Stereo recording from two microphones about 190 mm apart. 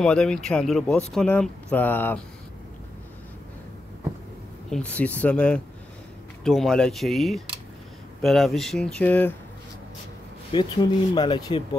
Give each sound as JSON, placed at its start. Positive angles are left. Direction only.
{"t": 0.0, "sound": "speech", "side_deg": 5}
{"t": 4.6, "sound": "speech", "side_deg": 5}
{"t": 10.5, "sound": "speech", "side_deg": 25}